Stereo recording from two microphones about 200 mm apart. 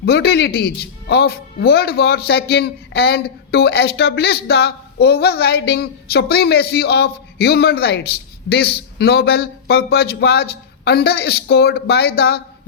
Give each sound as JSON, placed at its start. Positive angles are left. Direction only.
{"t": 0.0, "sound": "speech", "side_deg": 55}